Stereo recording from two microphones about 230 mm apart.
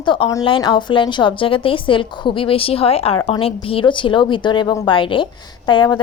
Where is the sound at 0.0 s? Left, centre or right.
Left.